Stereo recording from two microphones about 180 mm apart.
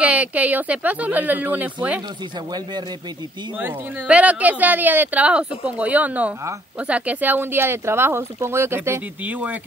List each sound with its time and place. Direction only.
0.0 s speech: 10° right (ahead or behind)
3.5 s speech: 10° right (ahead or behind)